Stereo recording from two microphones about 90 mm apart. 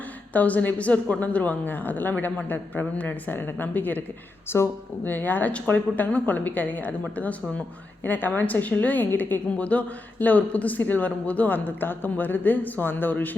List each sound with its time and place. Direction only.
0.3 s a woman's voice: 15° left (ahead or behind)